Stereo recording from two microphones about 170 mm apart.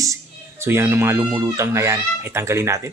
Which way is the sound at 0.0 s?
15° right (ahead or behind).